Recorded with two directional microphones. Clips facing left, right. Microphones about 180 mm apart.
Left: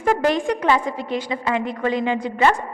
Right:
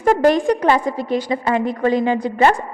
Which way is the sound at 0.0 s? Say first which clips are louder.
Right 5 dB; 40° right (ahead or behind).